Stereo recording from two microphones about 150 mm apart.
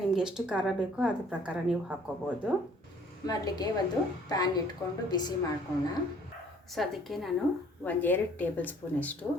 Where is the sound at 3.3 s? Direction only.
25° left (ahead or behind).